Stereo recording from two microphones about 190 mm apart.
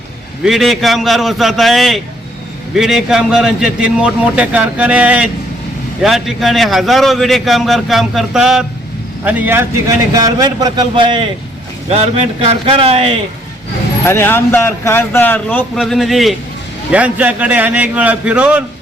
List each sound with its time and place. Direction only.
0.4 s a man's voice: centre (ahead or behind); by 13.1 s 30° right (ahead or behind)
14.1 s a man's voice: 10° left (ahead or behind); by 18.6 s 5° right (ahead or behind)